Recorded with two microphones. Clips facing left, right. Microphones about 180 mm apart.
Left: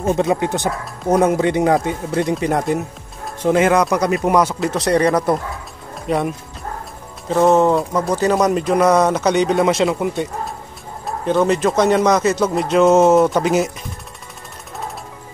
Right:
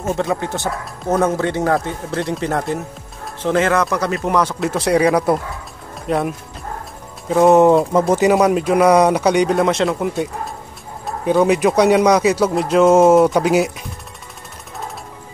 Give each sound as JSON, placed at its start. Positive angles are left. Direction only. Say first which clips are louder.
{"t": 0.0, "sound": "speech", "louder": "left 3 dB", "side_deg": 20}
{"t": 4.6, "sound": "speech", "louder": "even", "side_deg": -5}
{"t": 7.2, "sound": "speech", "louder": "right 3 dB", "side_deg": -10}
{"t": 8.4, "sound": "speech", "louder": "right 1 dB", "side_deg": -5}